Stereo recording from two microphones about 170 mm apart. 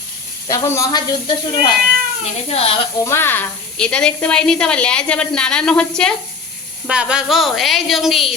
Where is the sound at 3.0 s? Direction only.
15° left (ahead or behind).